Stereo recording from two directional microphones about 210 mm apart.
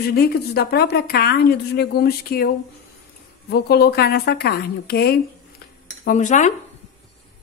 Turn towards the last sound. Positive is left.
turn(degrees=35)  # may be behind; listen again after turning